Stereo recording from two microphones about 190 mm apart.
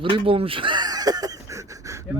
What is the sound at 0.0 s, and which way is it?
Speech, 25° right (ahead or behind).